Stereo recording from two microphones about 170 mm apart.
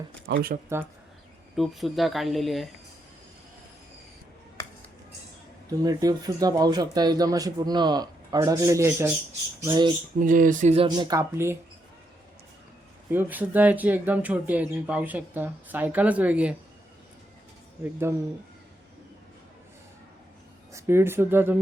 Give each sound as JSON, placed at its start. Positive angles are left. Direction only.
{"t": 0.3, "sound": "speech", "side_deg": -60}
{"t": 1.5, "sound": "speech", "side_deg": 0}
{"t": 5.8, "sound": "speech", "side_deg": -20}
{"t": 10.2, "sound": "speech", "side_deg": -50}
{"t": 10.8, "sound": "speech", "side_deg": -25}
{"t": 13.1, "sound": "speech", "side_deg": -10}
{"t": 20.7, "sound": "speech", "side_deg": -15}